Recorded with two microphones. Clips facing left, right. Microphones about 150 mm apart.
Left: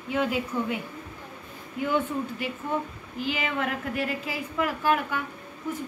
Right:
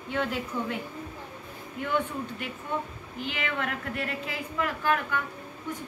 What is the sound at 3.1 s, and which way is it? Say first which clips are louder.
A woman's voice: left 3 dB; 5° left (ahead or behind).